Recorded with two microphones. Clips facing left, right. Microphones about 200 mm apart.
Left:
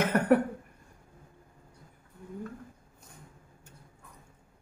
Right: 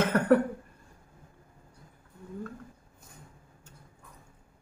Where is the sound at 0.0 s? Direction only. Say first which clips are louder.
Right 1 dB; 15° left (ahead or behind).